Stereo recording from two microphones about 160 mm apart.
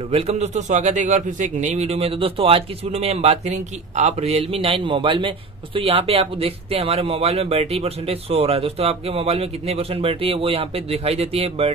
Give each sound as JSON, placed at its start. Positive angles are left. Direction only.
{"t": 0.1, "sound": "speech", "side_deg": -40}